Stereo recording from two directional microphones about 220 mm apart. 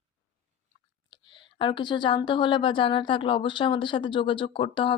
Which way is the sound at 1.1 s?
20° left (ahead or behind).